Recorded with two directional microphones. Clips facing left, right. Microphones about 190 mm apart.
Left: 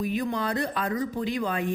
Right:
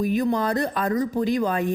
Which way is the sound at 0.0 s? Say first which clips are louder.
Right 6 dB; 45° right (ahead or behind).